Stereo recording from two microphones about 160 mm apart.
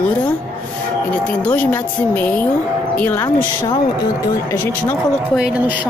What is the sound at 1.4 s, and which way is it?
Speech, 10° left (ahead or behind).